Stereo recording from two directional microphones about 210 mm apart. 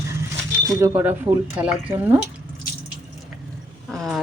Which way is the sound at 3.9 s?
Centre (ahead or behind).